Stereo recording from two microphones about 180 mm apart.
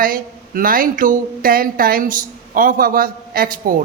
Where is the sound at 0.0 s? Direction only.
50° right (ahead or behind).